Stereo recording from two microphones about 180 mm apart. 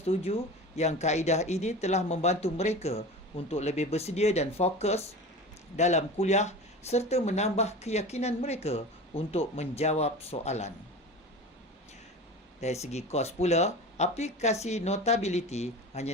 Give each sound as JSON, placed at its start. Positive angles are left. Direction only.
{"t": 0.0, "sound": "speech", "side_deg": 35}
{"t": 12.5, "sound": "speech", "side_deg": 35}